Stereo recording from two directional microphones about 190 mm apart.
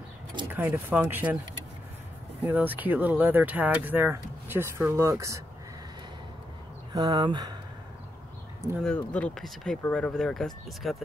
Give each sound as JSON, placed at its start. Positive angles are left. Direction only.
{"t": 0.5, "sound": "speech", "side_deg": -10}
{"t": 2.4, "sound": "speech", "side_deg": -10}
{"t": 6.9, "sound": "speech", "side_deg": -20}
{"t": 8.8, "sound": "speech", "side_deg": 5}